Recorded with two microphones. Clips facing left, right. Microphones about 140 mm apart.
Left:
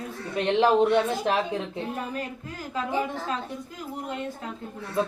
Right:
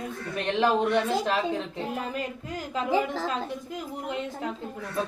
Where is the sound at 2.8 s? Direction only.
90° right.